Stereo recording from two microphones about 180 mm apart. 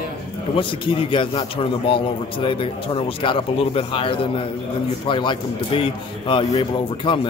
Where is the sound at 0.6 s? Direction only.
30° left (ahead or behind).